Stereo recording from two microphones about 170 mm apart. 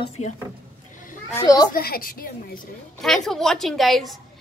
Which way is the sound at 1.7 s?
60° left (ahead or behind).